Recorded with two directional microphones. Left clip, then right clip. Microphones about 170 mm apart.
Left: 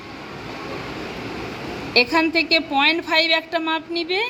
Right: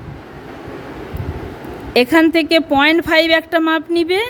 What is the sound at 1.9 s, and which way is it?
A woman's voice, 70° right (ahead or behind).